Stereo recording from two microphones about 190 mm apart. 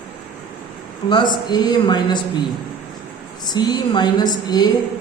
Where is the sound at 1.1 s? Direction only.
25° left (ahead or behind).